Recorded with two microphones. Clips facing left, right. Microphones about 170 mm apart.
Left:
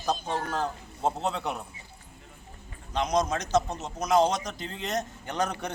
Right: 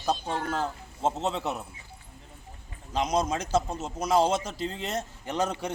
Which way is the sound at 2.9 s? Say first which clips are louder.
Even; 10° right (ahead or behind).